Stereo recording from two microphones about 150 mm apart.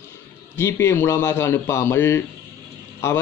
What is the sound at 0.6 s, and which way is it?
A man's voice, 20° left (ahead or behind).